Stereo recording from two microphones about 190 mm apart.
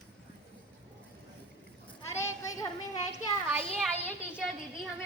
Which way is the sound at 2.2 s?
20° left (ahead or behind).